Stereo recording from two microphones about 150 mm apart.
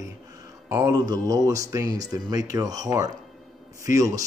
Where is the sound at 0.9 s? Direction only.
25° right (ahead or behind).